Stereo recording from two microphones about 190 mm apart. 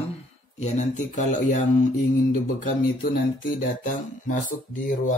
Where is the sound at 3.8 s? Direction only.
40° left (ahead or behind).